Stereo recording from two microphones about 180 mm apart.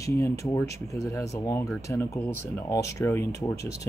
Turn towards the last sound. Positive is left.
turn(degrees=15)  # may be behind; listen again after turning